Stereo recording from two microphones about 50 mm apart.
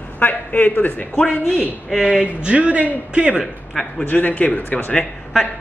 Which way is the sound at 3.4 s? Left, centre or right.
Centre.